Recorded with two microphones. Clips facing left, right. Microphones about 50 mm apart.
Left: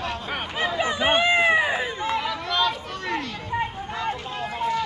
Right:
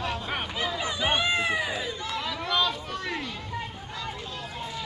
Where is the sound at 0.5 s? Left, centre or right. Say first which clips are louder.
Left 10 dB; left.